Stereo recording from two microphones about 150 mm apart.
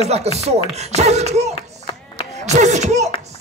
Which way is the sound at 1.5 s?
35° left (ahead or behind).